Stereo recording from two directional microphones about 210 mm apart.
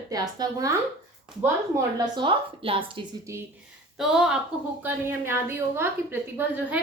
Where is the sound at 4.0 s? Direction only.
5° right (ahead or behind).